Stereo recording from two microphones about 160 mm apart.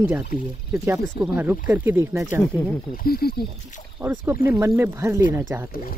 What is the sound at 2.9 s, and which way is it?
Speech, 70° left (ahead or behind).